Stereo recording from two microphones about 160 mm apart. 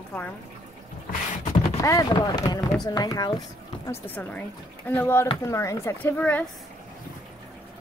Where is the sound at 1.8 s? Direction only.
20° left (ahead or behind).